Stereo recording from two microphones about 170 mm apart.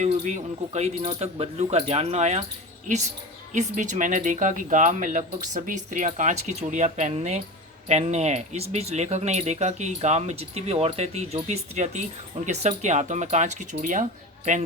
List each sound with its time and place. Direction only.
0.0 s speech: 45° right (ahead or behind)